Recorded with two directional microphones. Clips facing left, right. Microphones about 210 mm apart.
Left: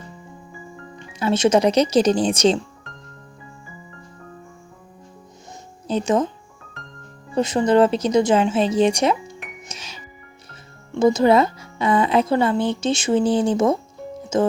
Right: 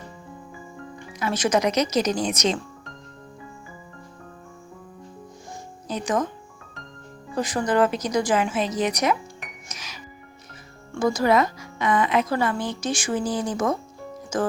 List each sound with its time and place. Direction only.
0.9 s speech: 25° left (ahead or behind)
5.9 s speech: 25° left (ahead or behind)
7.3 s speech: 25° left (ahead or behind)